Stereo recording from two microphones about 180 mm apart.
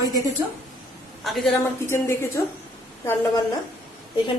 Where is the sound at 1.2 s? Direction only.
Centre (ahead or behind).